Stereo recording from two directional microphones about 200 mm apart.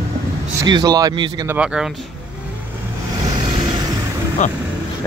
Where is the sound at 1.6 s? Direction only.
5° right (ahead or behind).